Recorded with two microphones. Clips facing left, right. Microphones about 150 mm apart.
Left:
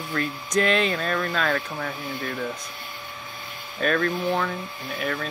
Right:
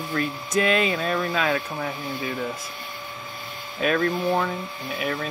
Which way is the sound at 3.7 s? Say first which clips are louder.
Right 1 dB; 5° right (ahead or behind).